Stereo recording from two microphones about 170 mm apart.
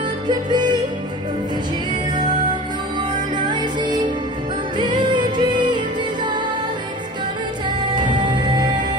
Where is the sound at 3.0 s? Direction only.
25° right (ahead or behind).